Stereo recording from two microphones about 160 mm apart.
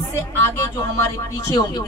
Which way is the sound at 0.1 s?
15° left (ahead or behind).